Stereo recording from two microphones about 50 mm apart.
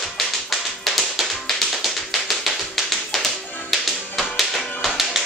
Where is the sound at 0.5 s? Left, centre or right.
Centre.